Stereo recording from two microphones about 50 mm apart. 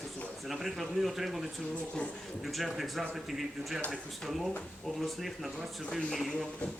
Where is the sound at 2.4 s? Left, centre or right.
Centre.